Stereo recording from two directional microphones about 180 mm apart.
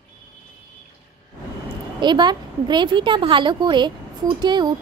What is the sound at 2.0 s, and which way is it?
A woman's voice, 25° right (ahead or behind).